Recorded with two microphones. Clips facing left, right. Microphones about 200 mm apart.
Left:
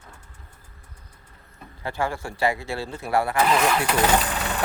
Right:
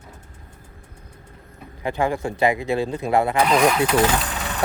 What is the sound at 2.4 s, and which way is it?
Speech, 20° right (ahead or behind).